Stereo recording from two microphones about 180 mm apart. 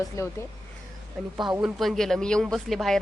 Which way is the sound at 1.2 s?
Centre (ahead or behind).